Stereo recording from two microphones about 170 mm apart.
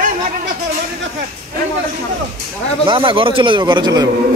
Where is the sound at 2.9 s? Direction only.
30° right (ahead or behind).